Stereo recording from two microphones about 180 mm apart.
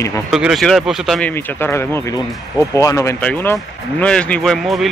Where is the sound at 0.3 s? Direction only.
Centre (ahead or behind).